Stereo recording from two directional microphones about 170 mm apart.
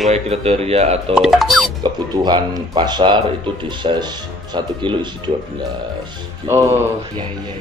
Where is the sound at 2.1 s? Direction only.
25° right (ahead or behind).